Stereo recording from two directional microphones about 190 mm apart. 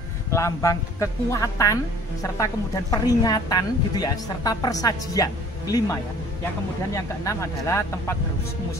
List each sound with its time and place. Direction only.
0.3 s a woman's voice: 15° left (ahead or behind)